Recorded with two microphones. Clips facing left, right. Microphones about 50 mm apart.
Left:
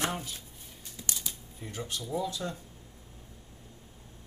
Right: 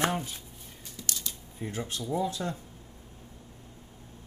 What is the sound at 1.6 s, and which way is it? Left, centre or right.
Speech, right.